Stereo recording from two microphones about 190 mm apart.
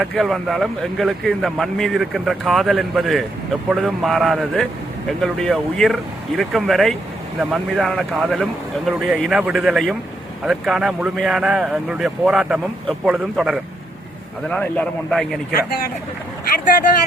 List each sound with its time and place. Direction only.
0.0 s a man's voice: centre (ahead or behind)
14.5 s a man's voice: 5° left (ahead or behind)